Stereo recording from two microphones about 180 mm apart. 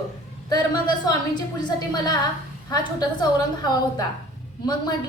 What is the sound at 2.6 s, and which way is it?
A woman's voice, 20° left (ahead or behind).